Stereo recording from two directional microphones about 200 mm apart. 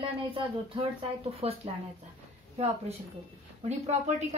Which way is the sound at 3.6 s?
35° right (ahead or behind).